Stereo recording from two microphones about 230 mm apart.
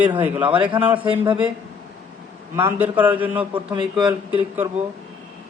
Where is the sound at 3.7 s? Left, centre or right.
Centre.